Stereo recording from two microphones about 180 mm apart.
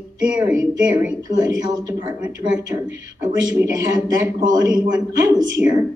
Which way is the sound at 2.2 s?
10° right (ahead or behind).